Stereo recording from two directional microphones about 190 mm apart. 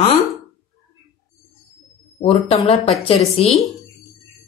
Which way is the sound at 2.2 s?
30° left (ahead or behind).